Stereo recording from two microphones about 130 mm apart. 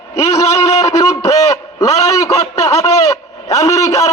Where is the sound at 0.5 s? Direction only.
25° left (ahead or behind).